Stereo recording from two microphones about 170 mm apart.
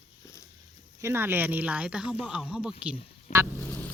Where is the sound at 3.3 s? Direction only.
45° left (ahead or behind).